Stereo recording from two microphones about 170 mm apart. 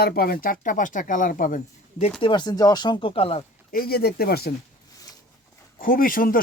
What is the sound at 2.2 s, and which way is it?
Speech, 25° left (ahead or behind).